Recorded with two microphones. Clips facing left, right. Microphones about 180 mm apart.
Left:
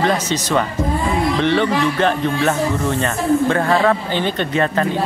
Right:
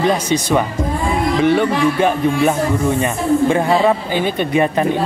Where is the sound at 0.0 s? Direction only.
10° right (ahead or behind).